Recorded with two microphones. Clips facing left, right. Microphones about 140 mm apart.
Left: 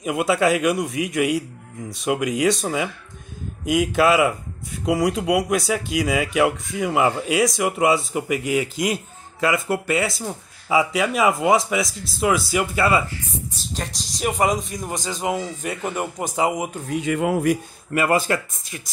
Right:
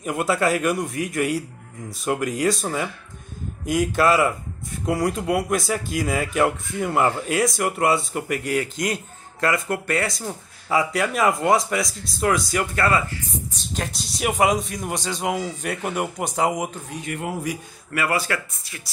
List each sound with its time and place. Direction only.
0.0 s speech: 5° left (ahead or behind)
5.2 s speech: 15° left (ahead or behind)
5.5 s speech: centre (ahead or behind)
13.6 s speech: 5° right (ahead or behind)
16.9 s a man's voice: 90° left
17.9 s speech: 20° left (ahead or behind)